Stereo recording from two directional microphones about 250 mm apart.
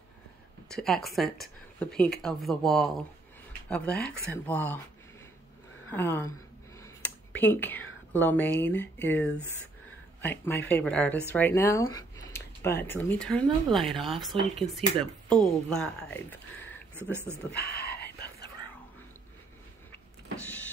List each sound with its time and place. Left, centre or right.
0.7 s speech: centre
5.9 s speech: centre
6.8 s a sound: centre
10.2 s speech: centre
15.4 s speech: centre
16.9 s speech: centre
17.5 s a sound: left